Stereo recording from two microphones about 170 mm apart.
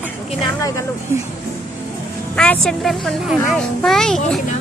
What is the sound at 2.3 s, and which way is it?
A child's voice, 5° left (ahead or behind).